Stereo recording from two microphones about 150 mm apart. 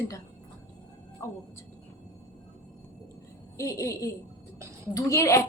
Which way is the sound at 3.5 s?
20° left (ahead or behind).